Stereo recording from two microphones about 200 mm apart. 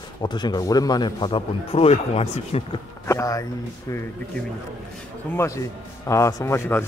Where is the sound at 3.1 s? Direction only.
15° left (ahead or behind).